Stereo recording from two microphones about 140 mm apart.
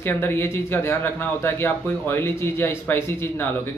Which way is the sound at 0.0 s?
15° left (ahead or behind).